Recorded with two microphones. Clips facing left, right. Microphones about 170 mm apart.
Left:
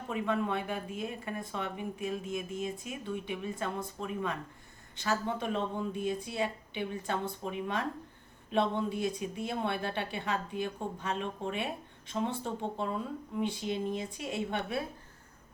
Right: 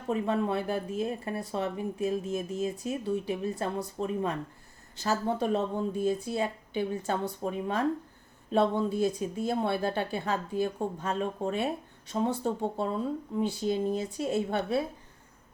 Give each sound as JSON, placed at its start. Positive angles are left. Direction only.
{"t": 0.1, "sound": "speech", "side_deg": -35}